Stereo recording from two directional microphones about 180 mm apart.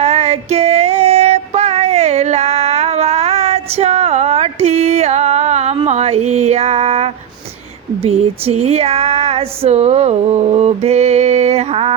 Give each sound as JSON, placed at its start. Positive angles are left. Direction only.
{"t": 0.0, "sound": "music", "side_deg": -35}
{"t": 8.0, "sound": "female singing", "side_deg": -35}